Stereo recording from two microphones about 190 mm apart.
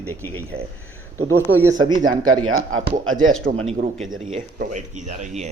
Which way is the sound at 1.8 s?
20° right (ahead or behind).